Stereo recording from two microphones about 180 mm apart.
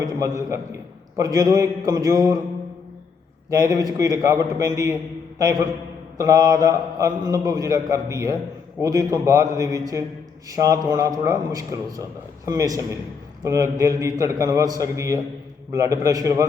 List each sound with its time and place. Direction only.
0.0 s a man's voice: 20° right (ahead or behind)
3.5 s a man's voice: 20° right (ahead or behind)